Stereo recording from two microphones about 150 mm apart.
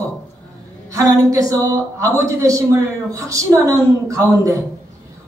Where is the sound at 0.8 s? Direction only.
25° right (ahead or behind).